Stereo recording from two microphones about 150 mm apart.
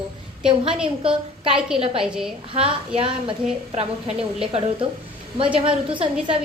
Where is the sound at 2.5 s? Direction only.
50° right (ahead or behind).